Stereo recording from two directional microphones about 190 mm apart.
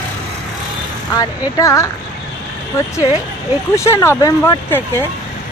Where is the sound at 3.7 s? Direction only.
15° left (ahead or behind).